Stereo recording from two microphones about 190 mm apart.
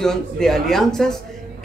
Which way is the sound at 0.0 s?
5° left (ahead or behind).